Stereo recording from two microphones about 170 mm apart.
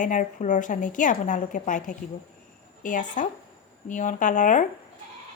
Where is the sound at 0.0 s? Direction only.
50° left (ahead or behind).